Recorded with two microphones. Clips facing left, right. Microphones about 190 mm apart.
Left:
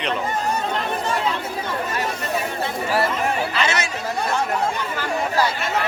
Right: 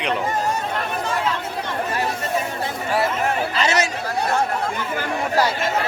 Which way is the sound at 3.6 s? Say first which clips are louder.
Right 3 dB; 40° right (ahead or behind).